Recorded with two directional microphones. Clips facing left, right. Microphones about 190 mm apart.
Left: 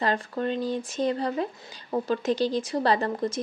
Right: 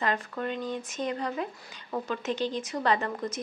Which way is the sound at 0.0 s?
30° left (ahead or behind).